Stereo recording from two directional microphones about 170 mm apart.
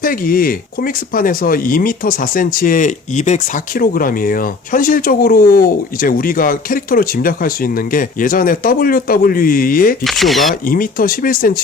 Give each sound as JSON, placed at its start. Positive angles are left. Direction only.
{"t": 0.0, "sound": "speech", "side_deg": 55}
{"t": 10.0, "sound": "speech", "side_deg": 0}
{"t": 10.7, "sound": "speech", "side_deg": 55}